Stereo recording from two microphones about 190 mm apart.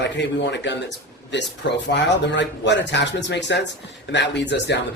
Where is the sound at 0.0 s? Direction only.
65° left (ahead or behind).